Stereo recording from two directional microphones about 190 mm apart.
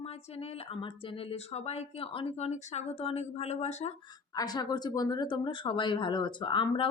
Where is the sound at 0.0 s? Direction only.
30° left (ahead or behind).